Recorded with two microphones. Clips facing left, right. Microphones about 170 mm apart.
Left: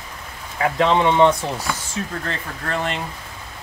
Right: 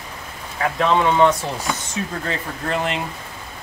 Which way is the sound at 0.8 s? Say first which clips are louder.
Left 1 dB; 25° left (ahead or behind).